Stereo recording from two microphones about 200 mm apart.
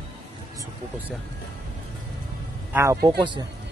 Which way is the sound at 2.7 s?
15° right (ahead or behind).